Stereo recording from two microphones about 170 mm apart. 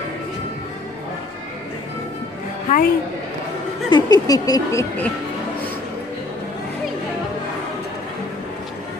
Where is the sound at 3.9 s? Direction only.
20° left (ahead or behind).